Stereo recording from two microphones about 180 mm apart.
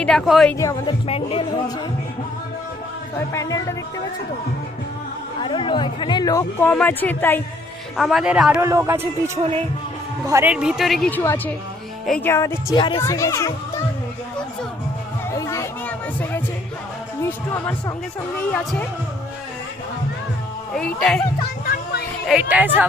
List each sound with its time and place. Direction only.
0.0 s speech: 5° left (ahead or behind)
0.6 s speech: 20° left (ahead or behind)
1.0 s speech: 35° left (ahead or behind)
3.3 s speech: 15° left (ahead or behind)
5.4 s speech: 30° left (ahead or behind); by 7.4 s 10° left (ahead or behind)
7.9 s speech: centre (ahead or behind); by 10.5 s 15° right (ahead or behind)
10.5 s speech: 5° right (ahead or behind); by 13.8 s 15° left (ahead or behind)
15.3 s a sound: 15° left (ahead or behind)
17.2 s speech: 10° left (ahead or behind)
20.7 s speech: 5° left (ahead or behind)
21.7 s a sound: 55° left (ahead or behind)
22.3 s speech: 10° right (ahead or behind)